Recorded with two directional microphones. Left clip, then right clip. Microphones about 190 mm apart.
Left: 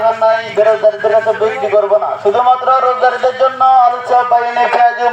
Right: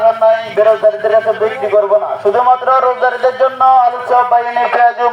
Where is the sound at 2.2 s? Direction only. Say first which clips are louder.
Even; 5° right (ahead or behind).